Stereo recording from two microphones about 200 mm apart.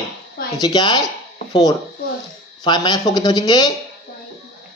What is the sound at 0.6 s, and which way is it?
Speech, 20° left (ahead or behind).